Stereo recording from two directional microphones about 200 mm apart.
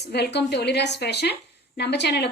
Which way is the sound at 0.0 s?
55° left (ahead or behind).